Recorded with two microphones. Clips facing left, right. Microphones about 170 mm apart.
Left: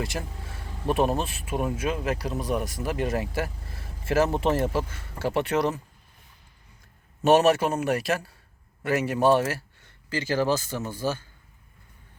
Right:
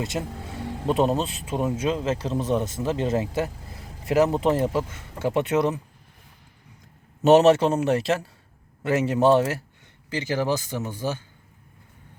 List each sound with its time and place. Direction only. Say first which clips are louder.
0.0 s music: right 3 dB; 25° right (ahead or behind)
1.2 s speech: right 2 dB; 20° right (ahead or behind)
7.2 s speech: right 4 dB; 20° right (ahead or behind)